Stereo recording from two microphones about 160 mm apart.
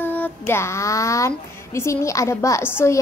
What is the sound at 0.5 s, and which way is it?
A child's voice, 15° left (ahead or behind).